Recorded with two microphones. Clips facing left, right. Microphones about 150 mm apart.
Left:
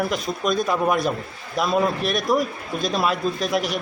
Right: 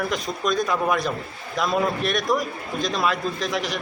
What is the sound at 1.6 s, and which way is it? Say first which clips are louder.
A man's voice: left 2 dB; centre (ahead or behind).